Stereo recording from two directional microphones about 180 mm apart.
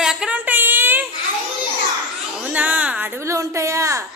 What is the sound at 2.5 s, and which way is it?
A child's voice, 10° right (ahead or behind).